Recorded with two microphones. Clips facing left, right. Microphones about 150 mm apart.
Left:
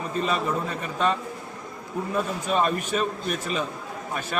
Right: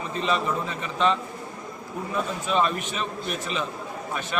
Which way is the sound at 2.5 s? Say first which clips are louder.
Left 1 dB; 45° left (ahead or behind).